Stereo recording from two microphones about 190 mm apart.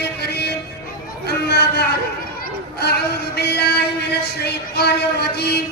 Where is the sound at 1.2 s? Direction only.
60° left (ahead or behind).